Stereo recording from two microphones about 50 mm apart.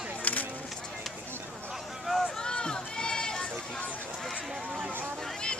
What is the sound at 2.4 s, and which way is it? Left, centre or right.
Run, centre.